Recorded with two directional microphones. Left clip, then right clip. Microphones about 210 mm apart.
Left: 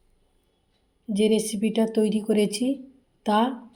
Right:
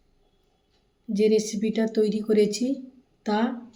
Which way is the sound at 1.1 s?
20° left (ahead or behind).